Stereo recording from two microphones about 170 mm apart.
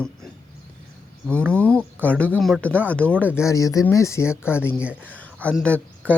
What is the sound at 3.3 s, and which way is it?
Speech, 20° left (ahead or behind).